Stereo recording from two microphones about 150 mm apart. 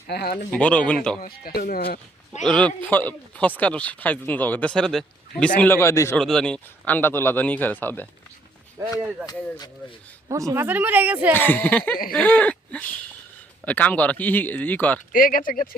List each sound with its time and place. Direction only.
0.1 s speech: 90° left
0.5 s a man's voice: 10° left (ahead or behind)
1.2 s speech: 75° left (ahead or behind)
2.4 s a man's voice: 5° left (ahead or behind)
5.5 s a man's voice: 15° left (ahead or behind)
6.1 s a man's voice: 5° left (ahead or behind)
8.8 s speech: 20° right (ahead or behind)
10.2 s speech: 20° right (ahead or behind)
11.3 s a man's voice: 10° left (ahead or behind)
15.1 s speech: 65° left (ahead or behind)